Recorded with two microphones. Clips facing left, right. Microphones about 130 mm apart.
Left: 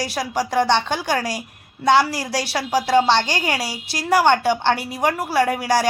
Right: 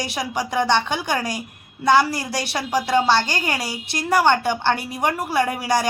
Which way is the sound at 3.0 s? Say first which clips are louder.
Even; 10° right (ahead or behind).